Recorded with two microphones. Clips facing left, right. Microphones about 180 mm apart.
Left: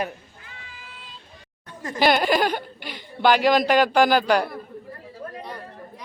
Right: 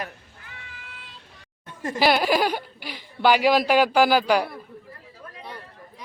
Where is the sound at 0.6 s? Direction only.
65° right (ahead or behind).